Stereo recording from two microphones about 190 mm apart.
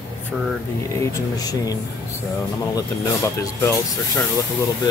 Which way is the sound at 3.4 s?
15° left (ahead or behind).